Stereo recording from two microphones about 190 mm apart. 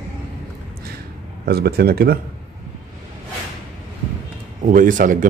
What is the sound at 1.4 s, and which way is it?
Speech, 55° right (ahead or behind).